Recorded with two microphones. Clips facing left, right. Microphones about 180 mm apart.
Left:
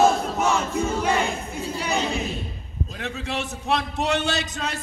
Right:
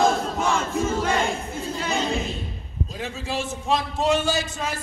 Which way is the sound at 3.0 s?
65° left (ahead or behind).